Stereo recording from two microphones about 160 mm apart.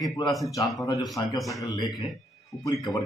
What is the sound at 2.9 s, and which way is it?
Speech, centre (ahead or behind).